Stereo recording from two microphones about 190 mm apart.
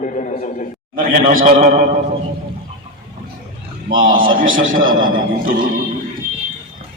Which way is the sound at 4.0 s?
45° right (ahead or behind).